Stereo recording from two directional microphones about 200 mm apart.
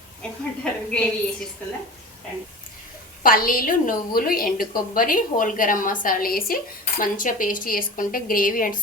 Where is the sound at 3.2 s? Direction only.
45° left (ahead or behind).